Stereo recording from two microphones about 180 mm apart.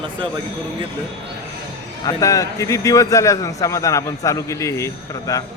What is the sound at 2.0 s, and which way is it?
A man's voice, 20° left (ahead or behind).